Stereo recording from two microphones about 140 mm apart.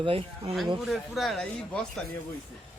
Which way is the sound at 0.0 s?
40° right (ahead or behind).